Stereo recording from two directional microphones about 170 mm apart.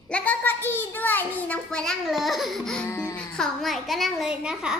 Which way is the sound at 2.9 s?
15° left (ahead or behind).